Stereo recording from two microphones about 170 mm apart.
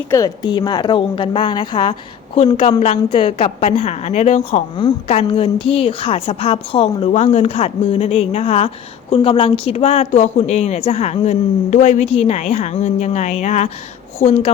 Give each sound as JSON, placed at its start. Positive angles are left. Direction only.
{"t": 0.1, "sound": "a woman's voice", "side_deg": 25}